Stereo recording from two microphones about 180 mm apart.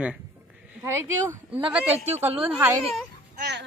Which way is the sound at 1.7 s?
5° right (ahead or behind).